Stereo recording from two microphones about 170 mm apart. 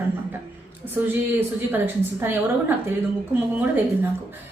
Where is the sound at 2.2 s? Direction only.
10° right (ahead or behind).